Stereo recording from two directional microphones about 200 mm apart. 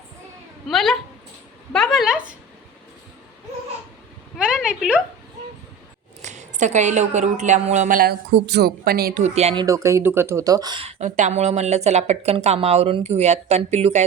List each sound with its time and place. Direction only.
0.7 s a woman's voice: centre (ahead or behind)
4.4 s a woman's voice: 5° right (ahead or behind)
6.2 s speech: 35° right (ahead or behind)
9.2 s speech: 30° right (ahead or behind)
9.6 s speech: 15° right (ahead or behind); by 14.0 s 35° right (ahead or behind)